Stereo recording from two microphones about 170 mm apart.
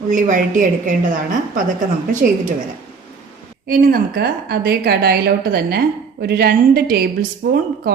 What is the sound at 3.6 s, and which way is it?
A woman's voice, 55° right (ahead or behind).